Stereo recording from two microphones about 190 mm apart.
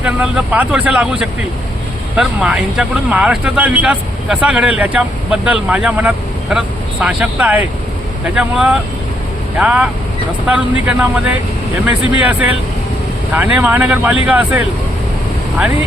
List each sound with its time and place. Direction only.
0.0 s speech: 5° right (ahead or behind)